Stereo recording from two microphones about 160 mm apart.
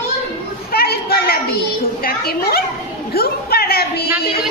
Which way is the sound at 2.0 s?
75° left (ahead or behind).